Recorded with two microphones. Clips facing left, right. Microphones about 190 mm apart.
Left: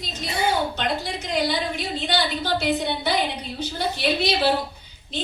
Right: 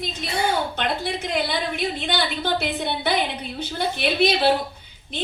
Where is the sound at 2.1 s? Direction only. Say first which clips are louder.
Left 2 dB; 55° right (ahead or behind).